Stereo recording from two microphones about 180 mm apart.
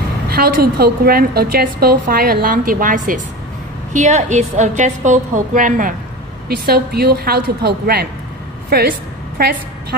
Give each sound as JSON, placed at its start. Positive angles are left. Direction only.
{"t": 0.3, "sound": "a woman's voice", "side_deg": -55}
{"t": 6.5, "sound": "a woman's voice", "side_deg": -60}